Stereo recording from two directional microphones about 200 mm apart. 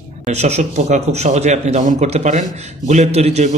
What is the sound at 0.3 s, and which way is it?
A man's voice, 35° right (ahead or behind).